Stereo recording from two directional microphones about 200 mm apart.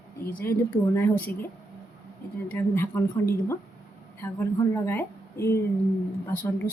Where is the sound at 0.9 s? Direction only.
10° left (ahead or behind).